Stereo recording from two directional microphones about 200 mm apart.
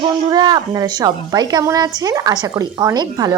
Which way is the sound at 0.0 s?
20° right (ahead or behind).